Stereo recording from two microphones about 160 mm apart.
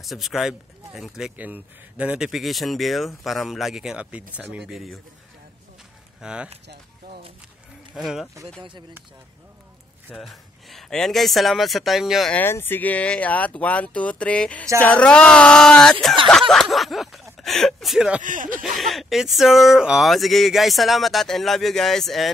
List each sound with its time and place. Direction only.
0.0 s speech: centre (ahead or behind)
6.2 s speech: 5° right (ahead or behind)
7.9 s speech: centre (ahead or behind)
8.5 s speech: 30° right (ahead or behind)
10.0 s speech: centre (ahead or behind)
12.4 s speech: 15° left (ahead or behind); by 18.2 s 5° right (ahead or behind)
18.2 s speech: 55° right (ahead or behind)
18.8 s speech: centre (ahead or behind)